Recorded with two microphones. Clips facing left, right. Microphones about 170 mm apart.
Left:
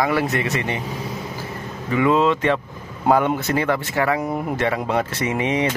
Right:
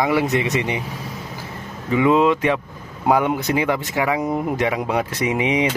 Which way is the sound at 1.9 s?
15° right (ahead or behind).